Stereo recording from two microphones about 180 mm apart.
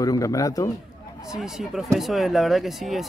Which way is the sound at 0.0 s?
20° left (ahead or behind).